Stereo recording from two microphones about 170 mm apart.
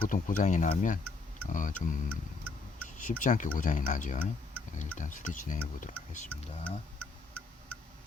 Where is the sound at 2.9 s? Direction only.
50° left (ahead or behind).